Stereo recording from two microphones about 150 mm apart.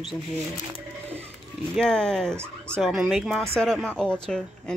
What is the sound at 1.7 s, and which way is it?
Speech, 5° left (ahead or behind).